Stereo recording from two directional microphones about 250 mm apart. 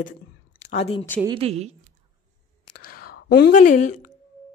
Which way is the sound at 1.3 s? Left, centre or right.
Right.